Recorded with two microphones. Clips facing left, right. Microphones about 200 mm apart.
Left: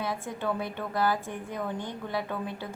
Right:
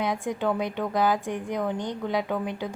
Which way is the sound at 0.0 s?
15° right (ahead or behind).